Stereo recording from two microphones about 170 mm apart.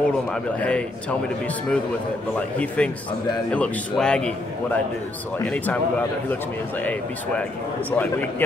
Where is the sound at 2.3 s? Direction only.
10° left (ahead or behind).